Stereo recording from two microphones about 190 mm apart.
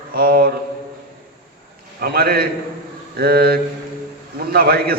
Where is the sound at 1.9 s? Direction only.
55° right (ahead or behind).